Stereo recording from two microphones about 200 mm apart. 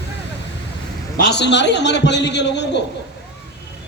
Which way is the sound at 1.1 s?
55° left (ahead or behind).